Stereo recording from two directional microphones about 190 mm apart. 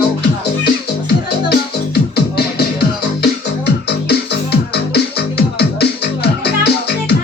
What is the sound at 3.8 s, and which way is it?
Music, 60° left (ahead or behind).